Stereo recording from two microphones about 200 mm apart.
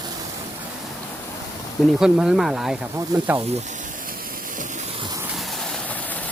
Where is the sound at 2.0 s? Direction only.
5° right (ahead or behind).